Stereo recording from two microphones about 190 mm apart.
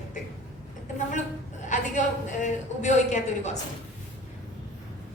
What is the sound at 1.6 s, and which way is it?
A woman's voice, 40° left (ahead or behind).